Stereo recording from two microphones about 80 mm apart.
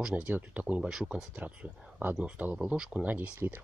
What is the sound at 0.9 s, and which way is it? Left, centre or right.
Speech, centre.